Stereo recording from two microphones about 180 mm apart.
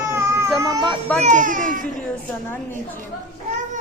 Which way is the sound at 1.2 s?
45° right (ahead or behind).